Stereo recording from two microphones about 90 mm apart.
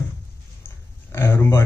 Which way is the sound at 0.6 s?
30° left (ahead or behind).